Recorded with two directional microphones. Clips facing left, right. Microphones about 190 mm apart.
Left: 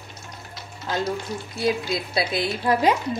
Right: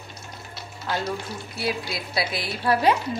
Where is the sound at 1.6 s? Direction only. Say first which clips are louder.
Left 5 dB; 25° left (ahead or behind).